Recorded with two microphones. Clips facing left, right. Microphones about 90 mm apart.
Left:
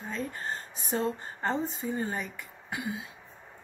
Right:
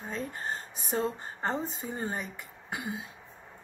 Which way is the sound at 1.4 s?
25° right (ahead or behind).